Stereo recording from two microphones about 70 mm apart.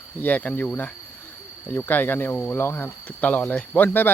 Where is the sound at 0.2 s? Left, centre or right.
Left.